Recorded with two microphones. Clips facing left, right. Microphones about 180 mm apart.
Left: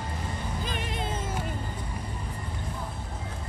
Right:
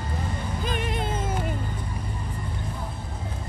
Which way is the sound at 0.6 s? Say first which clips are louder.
Right 7 dB; 55° right (ahead or behind).